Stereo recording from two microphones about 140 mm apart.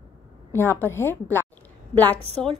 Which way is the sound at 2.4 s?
5° left (ahead or behind).